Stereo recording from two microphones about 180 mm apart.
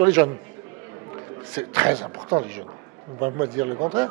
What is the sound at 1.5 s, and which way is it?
Speech, 10° right (ahead or behind).